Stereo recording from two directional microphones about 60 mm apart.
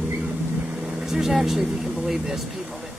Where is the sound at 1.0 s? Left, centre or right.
Centre.